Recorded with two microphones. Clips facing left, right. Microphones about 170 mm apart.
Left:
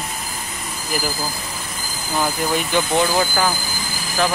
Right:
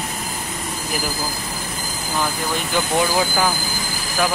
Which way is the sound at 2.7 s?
5° right (ahead or behind).